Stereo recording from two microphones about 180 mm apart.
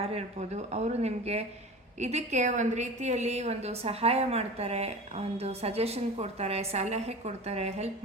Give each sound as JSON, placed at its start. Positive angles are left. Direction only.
{"t": 0.0, "sound": "a woman's voice", "side_deg": -35}